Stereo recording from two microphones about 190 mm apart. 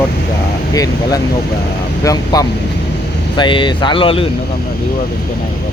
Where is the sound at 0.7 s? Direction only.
20° left (ahead or behind).